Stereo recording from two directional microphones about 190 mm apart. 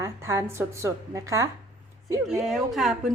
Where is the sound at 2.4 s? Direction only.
Centre (ahead or behind).